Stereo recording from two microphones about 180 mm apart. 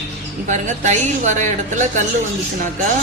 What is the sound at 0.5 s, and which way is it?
A woman's voice, 40° right (ahead or behind).